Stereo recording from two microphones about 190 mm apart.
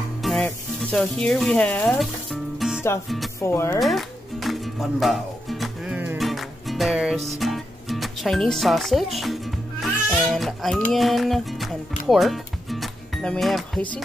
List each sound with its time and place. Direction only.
0.2 s music: centre (ahead or behind)
3.3 s speech: 15° left (ahead or behind)
3.8 s music: centre (ahead or behind)
7.3 s a child's voice: centre (ahead or behind)
12.1 s music: centre (ahead or behind)